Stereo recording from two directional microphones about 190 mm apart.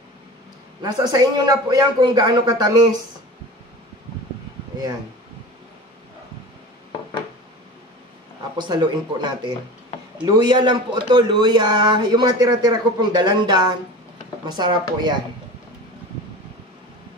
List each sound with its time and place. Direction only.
1.0 s speech: 20° right (ahead or behind)
8.5 s speech: 25° right (ahead or behind)